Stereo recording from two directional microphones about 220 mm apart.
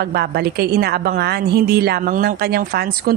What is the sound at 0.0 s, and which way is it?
A woman's voice, 45° right (ahead or behind).